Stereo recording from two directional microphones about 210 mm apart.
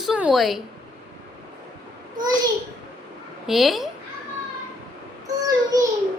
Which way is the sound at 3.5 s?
Centre (ahead or behind).